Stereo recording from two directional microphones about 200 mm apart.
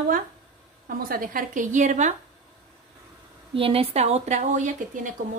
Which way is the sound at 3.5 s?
30° right (ahead or behind).